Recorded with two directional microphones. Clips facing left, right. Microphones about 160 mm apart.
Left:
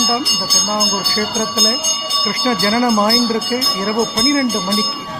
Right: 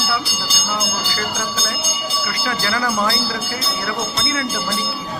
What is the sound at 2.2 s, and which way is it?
Speech, 30° left (ahead or behind).